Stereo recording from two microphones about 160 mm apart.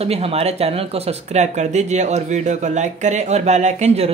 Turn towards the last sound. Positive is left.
turn(degrees=-40)  # may be behind; listen again after turning